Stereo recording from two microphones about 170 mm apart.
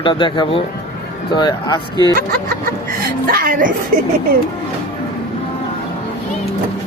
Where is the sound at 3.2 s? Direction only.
55° right (ahead or behind).